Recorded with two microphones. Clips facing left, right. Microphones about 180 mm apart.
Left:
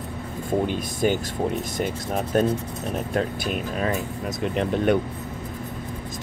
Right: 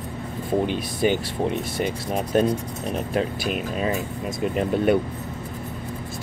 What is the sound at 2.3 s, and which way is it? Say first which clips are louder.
Speech: right 1 dB; 10° right (ahead or behind).